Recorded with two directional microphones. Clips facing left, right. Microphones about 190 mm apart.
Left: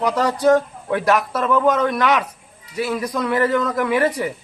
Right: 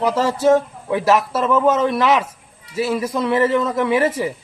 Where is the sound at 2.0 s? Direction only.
25° right (ahead or behind).